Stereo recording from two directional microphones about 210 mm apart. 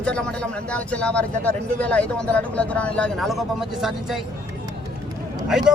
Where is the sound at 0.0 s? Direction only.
5° left (ahead or behind).